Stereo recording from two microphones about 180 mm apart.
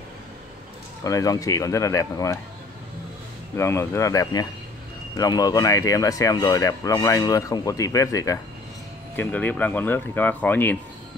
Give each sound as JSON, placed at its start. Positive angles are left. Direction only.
{"t": 1.0, "sound": "speech", "side_deg": 20}
{"t": 3.5, "sound": "speech", "side_deg": 15}